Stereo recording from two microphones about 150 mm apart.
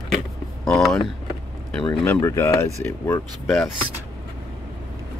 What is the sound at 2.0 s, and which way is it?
Speech, 15° left (ahead or behind).